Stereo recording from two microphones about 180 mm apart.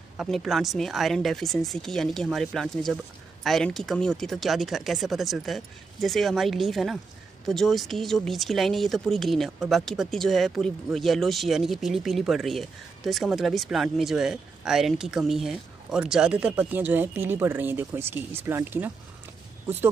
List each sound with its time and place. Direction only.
0.2 s speech: centre (ahead or behind)